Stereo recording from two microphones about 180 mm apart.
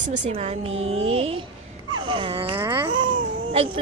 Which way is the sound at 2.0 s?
25° right (ahead or behind).